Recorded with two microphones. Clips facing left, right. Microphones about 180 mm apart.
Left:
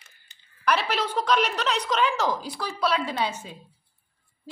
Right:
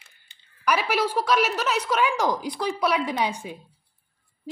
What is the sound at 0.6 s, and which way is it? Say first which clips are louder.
A woman's voice: right 2 dB; 10° right (ahead or behind).